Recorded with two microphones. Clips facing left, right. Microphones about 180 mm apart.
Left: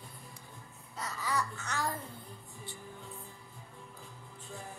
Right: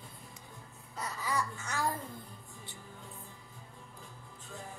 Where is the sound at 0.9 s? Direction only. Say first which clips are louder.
Even; 10° right (ahead or behind).